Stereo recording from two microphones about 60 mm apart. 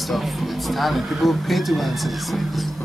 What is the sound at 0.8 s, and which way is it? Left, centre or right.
Speech, centre.